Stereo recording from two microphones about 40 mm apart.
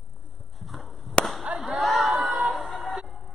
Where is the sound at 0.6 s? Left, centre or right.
Centre.